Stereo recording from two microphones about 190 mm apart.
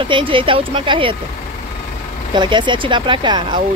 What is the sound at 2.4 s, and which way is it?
Speech, 25° right (ahead or behind).